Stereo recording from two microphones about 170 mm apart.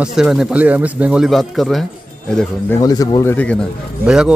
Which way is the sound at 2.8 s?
20° left (ahead or behind).